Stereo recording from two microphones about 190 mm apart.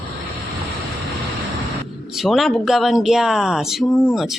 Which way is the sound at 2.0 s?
Centre (ahead or behind).